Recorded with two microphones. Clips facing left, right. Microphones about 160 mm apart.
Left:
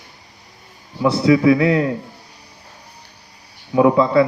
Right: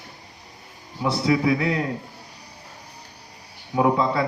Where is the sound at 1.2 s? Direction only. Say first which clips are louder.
Left 8 dB; 85° left.